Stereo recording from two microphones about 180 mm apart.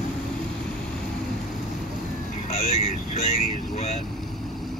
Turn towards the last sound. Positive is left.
turn(degrees=35)  # may be behind; listen again after turning